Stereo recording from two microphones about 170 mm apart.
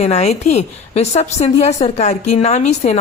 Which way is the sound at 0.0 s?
40° left (ahead or behind).